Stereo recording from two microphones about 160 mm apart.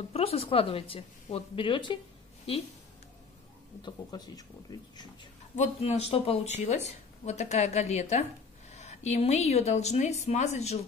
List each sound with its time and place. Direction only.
0.1 s a woman's voice: 40° left (ahead or behind)
3.8 s speech: 25° left (ahead or behind)
5.6 s speech: 40° left (ahead or behind)